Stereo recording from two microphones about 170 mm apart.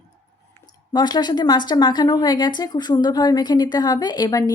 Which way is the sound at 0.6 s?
25° left (ahead or behind).